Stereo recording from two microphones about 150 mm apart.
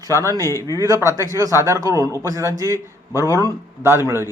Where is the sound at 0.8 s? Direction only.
20° right (ahead or behind).